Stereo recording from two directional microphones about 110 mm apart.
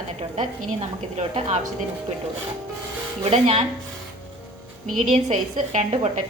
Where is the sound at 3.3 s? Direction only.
75° right (ahead or behind).